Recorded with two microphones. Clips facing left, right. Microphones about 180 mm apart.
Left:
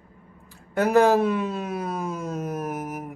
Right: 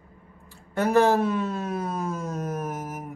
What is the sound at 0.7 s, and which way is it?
Speech, 15° left (ahead or behind).